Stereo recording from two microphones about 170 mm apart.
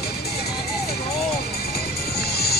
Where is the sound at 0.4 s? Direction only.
65° left (ahead or behind).